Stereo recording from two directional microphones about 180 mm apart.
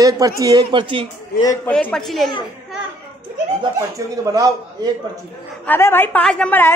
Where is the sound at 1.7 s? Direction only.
5° left (ahead or behind).